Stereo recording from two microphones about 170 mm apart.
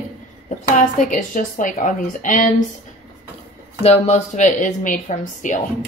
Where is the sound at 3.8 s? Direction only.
40° left (ahead or behind).